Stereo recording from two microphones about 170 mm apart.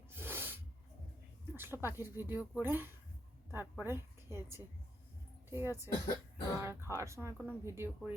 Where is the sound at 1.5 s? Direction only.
15° right (ahead or behind).